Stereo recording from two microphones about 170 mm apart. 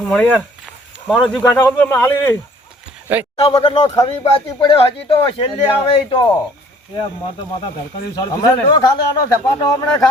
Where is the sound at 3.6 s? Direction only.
35° left (ahead or behind).